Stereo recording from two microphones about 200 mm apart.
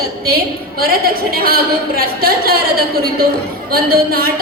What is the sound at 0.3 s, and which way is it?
A woman's voice, 50° right (ahead or behind).